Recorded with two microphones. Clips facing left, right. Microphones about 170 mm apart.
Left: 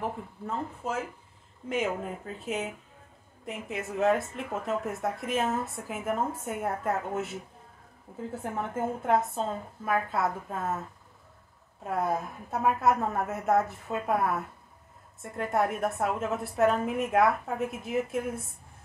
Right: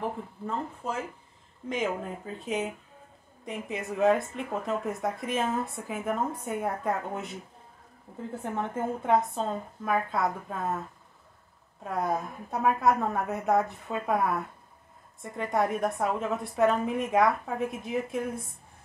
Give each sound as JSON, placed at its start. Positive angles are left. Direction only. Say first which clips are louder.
{"t": 0.8, "sound": "speech", "louder": "left 1 dB", "side_deg": 5}
{"t": 11.8, "sound": "speech", "louder": "even", "side_deg": 5}